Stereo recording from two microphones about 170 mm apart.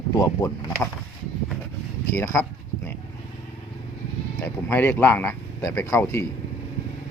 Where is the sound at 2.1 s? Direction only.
15° left (ahead or behind).